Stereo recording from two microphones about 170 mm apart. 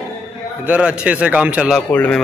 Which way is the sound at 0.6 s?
10° right (ahead or behind).